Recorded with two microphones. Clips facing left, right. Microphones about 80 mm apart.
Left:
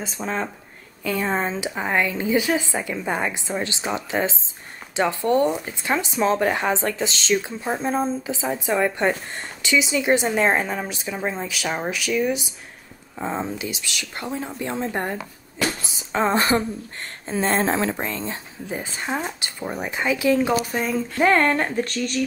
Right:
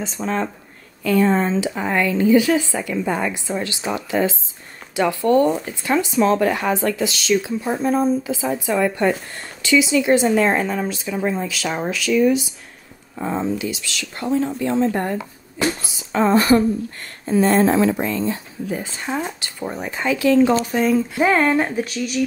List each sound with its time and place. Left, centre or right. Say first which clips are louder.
0.0 s speech: right 4 dB; centre
1.0 s a woman's voice: right 6 dB; centre
15.9 s a woman's voice: right 5 dB; left
19.6 s speech: right 2 dB; centre
20.6 s speech: right 6 dB; centre